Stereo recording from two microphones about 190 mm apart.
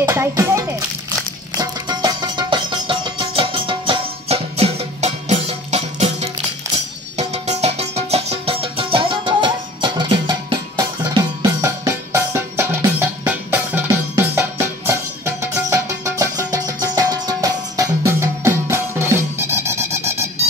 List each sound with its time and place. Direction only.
0.0 s music: 15° right (ahead or behind)